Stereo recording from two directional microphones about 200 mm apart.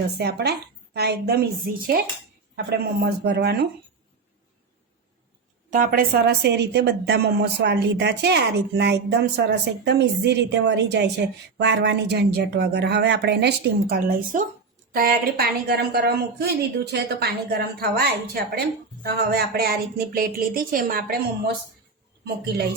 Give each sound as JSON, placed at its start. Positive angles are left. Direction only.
{"t": 0.2, "sound": "a woman's voice", "side_deg": -55}
{"t": 5.7, "sound": "a woman's voice", "side_deg": -45}
{"t": 13.9, "sound": "a woman's voice", "side_deg": -45}